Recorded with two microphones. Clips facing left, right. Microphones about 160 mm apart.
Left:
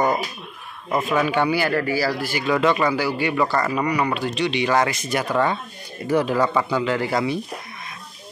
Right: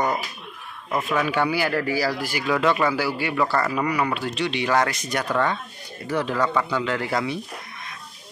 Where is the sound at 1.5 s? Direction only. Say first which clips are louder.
Left 2 dB; 10° right (ahead or behind).